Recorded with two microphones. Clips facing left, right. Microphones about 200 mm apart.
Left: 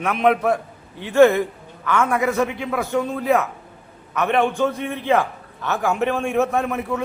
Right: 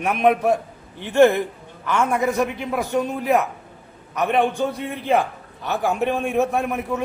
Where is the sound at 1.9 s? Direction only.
15° right (ahead or behind).